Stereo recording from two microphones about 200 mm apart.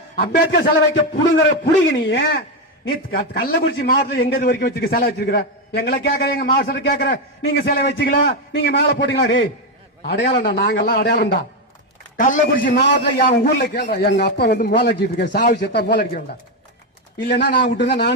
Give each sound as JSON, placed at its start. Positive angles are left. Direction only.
{"t": 0.2, "sound": "speech", "side_deg": 50}